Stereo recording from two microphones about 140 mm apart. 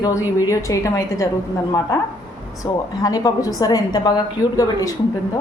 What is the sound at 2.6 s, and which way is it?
A woman's voice, 25° left (ahead or behind).